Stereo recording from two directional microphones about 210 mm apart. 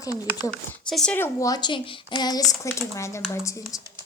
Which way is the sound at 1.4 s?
20° left (ahead or behind).